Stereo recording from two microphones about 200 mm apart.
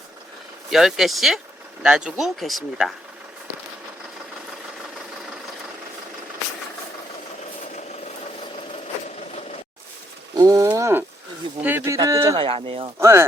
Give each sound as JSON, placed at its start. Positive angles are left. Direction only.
{"t": 0.7, "sound": "speech", "side_deg": 0}
{"t": 10.3, "sound": "speech", "side_deg": -15}
{"t": 12.4, "sound": "speech", "side_deg": -25}
{"t": 13.0, "sound": "speech", "side_deg": -10}